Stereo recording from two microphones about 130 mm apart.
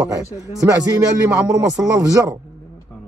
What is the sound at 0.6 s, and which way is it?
Speech, 25° right (ahead or behind).